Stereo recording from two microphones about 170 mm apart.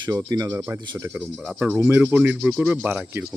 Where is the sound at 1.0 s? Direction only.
10° right (ahead or behind).